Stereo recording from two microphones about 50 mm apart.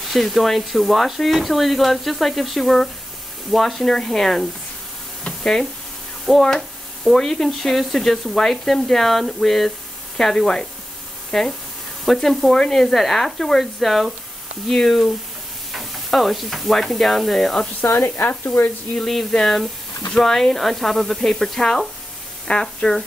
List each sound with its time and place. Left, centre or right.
0.0 s speech: centre
5.2 s sizzle: centre
6.2 s speech: centre
15.7 s stir: centre
17.8 s speech: left
18.9 s speech: centre